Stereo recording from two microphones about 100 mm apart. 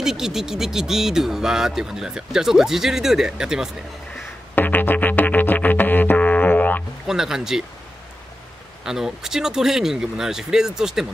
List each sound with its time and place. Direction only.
0.0 s speech: 5° right (ahead or behind)
4.6 s music: 20° left (ahead or behind)
7.1 s speech: 5° right (ahead or behind)
8.8 s speech: 5° right (ahead or behind)